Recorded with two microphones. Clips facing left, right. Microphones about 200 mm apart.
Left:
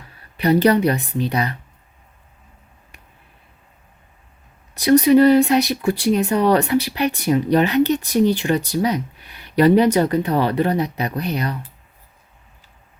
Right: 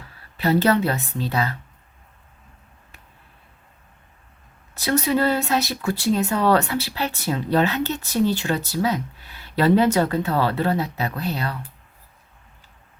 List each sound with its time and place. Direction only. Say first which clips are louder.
0.3 s speech: left 4 dB; 15° left (ahead or behind)
4.7 s speech: left 9 dB; 15° left (ahead or behind)